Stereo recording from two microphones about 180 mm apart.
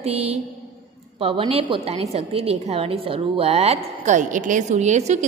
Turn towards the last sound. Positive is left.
turn(degrees=-40)  # may be behind; listen again after turning